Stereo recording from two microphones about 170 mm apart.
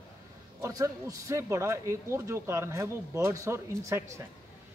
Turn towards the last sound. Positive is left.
turn(degrees=-15)  # may be behind; listen again after turning